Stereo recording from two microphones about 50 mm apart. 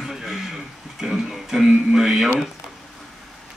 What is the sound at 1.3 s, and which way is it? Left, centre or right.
Speech, centre.